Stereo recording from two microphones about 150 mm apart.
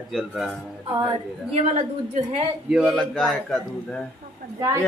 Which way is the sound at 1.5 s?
45° right (ahead or behind).